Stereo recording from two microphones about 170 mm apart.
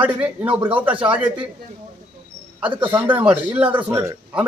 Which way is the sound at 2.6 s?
10° right (ahead or behind).